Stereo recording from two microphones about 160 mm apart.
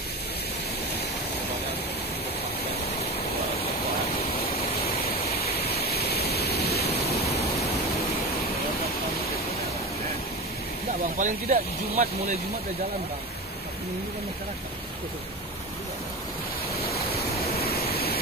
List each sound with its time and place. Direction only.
4.1 s a sound: 35° left (ahead or behind)
5.1 s waterfall: 80° left
11.1 s speech: 50° right (ahead or behind)
17.5 s waterfall: 75° left (ahead or behind)